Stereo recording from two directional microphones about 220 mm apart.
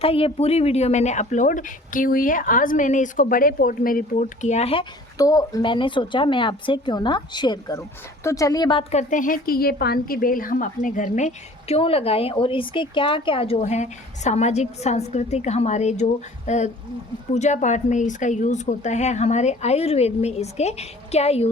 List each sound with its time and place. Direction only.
0.0 s speech: 25° left (ahead or behind)